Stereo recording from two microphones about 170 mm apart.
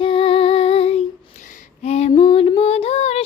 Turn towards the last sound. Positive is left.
turn(degrees=35)  # may be behind; listen again after turning